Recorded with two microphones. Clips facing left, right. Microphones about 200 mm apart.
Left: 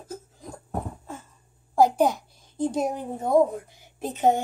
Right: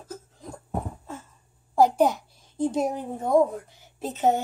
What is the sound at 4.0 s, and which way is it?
Speech, 15° left (ahead or behind).